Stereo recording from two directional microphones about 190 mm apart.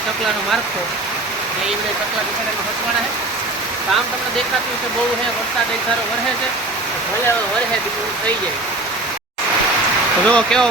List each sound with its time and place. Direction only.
10.2 s speech: 5° left (ahead or behind)